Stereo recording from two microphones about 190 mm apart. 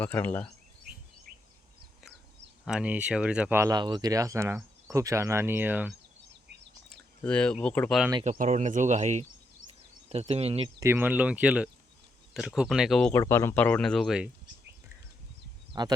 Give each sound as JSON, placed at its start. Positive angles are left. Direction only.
{"t": 0.0, "sound": "speech", "side_deg": 10}
{"t": 2.6, "sound": "speech", "side_deg": -5}
{"t": 6.9, "sound": "speech", "side_deg": 5}
{"t": 8.2, "sound": "speech", "side_deg": -40}
{"t": 10.8, "sound": "speech", "side_deg": -10}
{"t": 15.7, "sound": "speech", "side_deg": -20}